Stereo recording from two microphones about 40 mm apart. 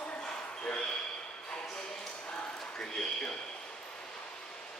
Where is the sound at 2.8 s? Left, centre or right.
Centre.